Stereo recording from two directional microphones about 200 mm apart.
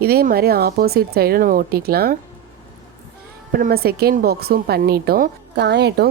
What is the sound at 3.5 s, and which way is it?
A woman's voice, 50° right (ahead or behind).